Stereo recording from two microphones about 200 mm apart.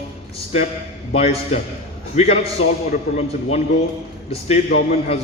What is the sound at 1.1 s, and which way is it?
A man's voice, 30° left (ahead or behind).